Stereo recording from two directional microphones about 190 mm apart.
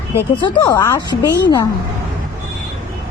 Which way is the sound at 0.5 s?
15° left (ahead or behind).